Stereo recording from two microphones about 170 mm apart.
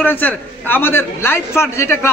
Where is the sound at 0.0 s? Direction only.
10° left (ahead or behind).